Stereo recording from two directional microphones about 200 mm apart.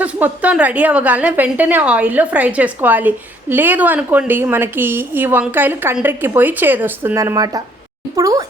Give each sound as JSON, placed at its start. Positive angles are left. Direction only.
{"t": 0.0, "sound": "a woman's voice", "side_deg": -5}